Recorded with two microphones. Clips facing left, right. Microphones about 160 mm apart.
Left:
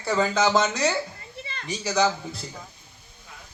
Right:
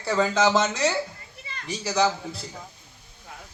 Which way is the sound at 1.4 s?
25° left (ahead or behind).